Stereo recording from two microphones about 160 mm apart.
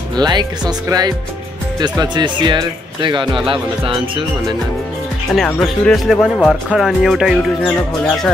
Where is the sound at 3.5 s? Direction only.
35° right (ahead or behind).